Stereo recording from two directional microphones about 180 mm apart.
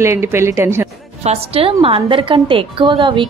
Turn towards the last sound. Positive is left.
turn(degrees=-25)  # may be behind; listen again after turning